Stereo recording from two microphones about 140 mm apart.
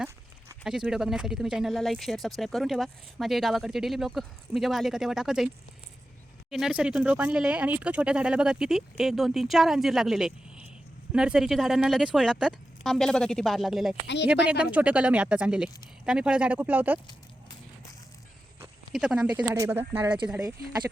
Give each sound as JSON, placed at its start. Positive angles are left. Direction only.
{"t": 0.6, "sound": "speech", "side_deg": -5}
{"t": 6.5, "sound": "speech", "side_deg": -5}
{"t": 18.9, "sound": "speech", "side_deg": -5}
{"t": 19.5, "sound": "speech", "side_deg": -20}